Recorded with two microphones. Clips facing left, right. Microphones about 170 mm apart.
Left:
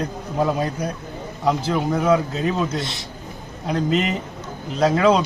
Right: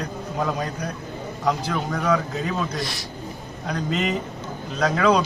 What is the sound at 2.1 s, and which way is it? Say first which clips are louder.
Speech: left 2 dB; 25° left (ahead or behind).